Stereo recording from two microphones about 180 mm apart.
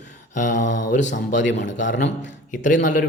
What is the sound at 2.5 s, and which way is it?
Speech, 45° left (ahead or behind).